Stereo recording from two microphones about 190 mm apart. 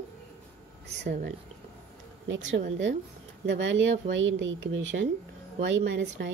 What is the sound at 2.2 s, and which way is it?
Speech, 80° right.